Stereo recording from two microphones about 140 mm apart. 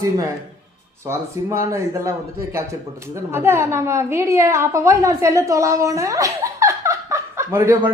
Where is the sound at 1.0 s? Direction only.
20° right (ahead or behind).